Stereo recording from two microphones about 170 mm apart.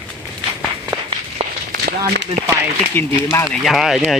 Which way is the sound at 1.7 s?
65° right (ahead or behind).